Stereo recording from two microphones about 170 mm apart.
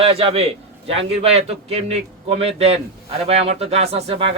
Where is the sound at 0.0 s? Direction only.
35° right (ahead or behind).